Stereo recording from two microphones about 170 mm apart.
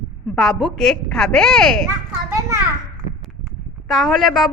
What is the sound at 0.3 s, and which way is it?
A woman's voice, centre (ahead or behind).